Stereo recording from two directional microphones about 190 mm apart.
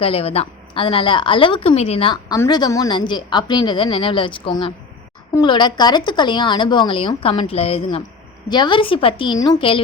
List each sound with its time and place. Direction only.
0.0 s speech: 30° left (ahead or behind)
2.3 s speech: 20° left (ahead or behind)